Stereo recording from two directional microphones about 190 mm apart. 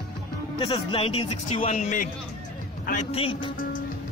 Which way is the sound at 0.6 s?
30° left (ahead or behind).